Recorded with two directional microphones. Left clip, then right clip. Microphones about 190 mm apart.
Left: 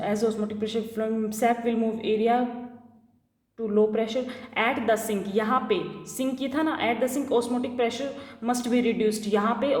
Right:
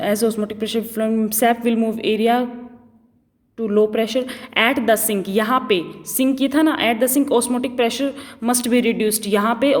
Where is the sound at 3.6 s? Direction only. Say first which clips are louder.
Right 6 dB; 45° right (ahead or behind).